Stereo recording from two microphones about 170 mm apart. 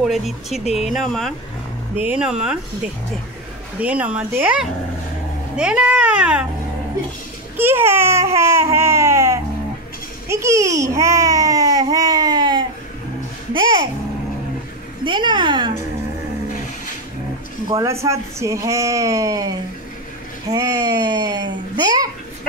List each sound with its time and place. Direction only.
0.0 s speech: centre (ahead or behind)
3.8 s speech: 10° right (ahead or behind)
7.5 s speech: 15° right (ahead or behind)
8.4 s baby cry: 15° right (ahead or behind)
10.2 s a child's voice: 15° right (ahead or behind)
11.9 s baby cry: 20° right (ahead or behind)
13.5 s a child's voice: 30° right (ahead or behind)
15.0 s speech: 25° right (ahead or behind)
17.6 s speech: 20° right (ahead or behind)
20.5 s speech: 20° right (ahead or behind)